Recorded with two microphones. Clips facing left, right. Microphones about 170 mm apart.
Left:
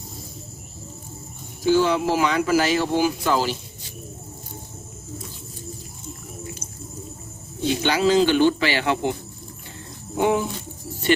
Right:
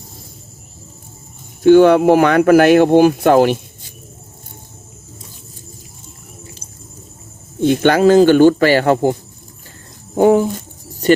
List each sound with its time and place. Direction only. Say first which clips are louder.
1.6 s speech: right 11 dB; 60° right (ahead or behind)
7.6 s speech: right 9 dB; 55° right (ahead or behind)
10.2 s speech: right 9 dB; 40° right (ahead or behind)